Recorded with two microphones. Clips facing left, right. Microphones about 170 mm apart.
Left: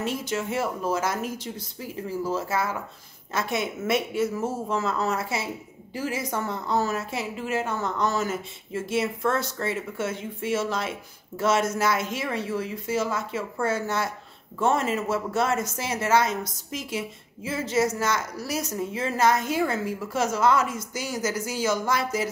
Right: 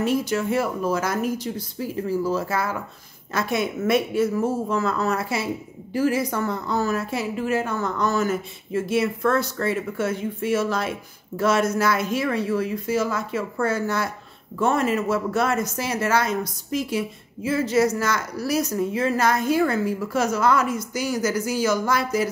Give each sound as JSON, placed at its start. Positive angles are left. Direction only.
{"t": 0.0, "sound": "speech", "side_deg": 25}
{"t": 2.2, "sound": "speech", "side_deg": 25}